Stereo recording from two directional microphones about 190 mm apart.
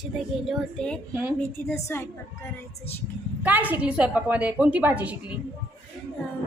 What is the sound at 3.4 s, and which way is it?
A woman's voice, 10° right (ahead or behind).